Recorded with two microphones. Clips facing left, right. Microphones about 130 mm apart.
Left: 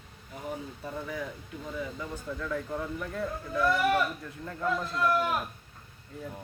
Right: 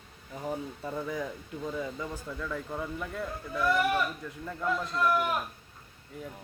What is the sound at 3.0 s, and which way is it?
Speech, 10° right (ahead or behind).